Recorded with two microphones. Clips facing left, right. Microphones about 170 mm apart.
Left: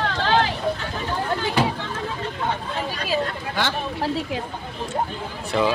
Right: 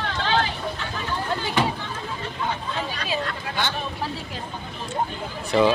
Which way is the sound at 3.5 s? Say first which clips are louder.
Left 3 dB; 90° left.